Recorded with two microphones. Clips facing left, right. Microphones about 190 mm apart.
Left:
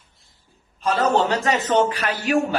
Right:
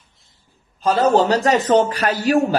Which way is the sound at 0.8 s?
35° right (ahead or behind).